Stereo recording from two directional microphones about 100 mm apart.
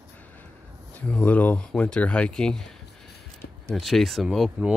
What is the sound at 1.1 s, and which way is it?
Speech, 15° left (ahead or behind).